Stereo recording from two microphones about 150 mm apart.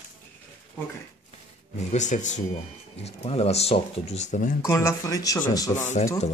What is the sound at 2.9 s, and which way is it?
Speech, 45° left (ahead or behind).